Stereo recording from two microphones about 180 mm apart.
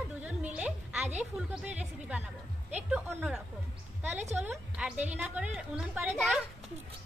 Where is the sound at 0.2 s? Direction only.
10° right (ahead or behind).